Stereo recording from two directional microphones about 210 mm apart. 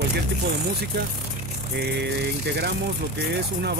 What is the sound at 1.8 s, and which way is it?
A man's voice, 50° right (ahead or behind).